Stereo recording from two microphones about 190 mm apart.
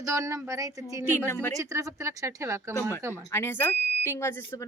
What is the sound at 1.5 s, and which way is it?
Speech, 15° right (ahead or behind).